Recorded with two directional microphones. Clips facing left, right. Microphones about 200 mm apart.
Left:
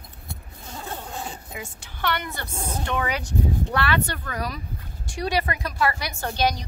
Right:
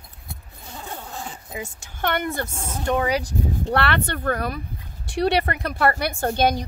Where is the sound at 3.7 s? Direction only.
60° right (ahead or behind).